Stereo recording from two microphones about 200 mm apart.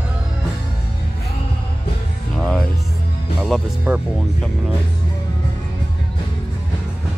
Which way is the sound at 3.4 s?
5° right (ahead or behind).